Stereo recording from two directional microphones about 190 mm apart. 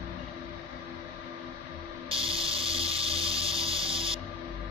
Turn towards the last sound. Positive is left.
turn(degrees=-30)  # may be behind; listen again after turning